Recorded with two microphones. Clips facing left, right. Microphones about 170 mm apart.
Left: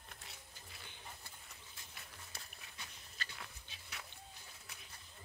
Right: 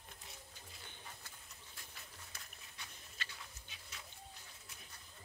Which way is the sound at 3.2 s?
40° left (ahead or behind).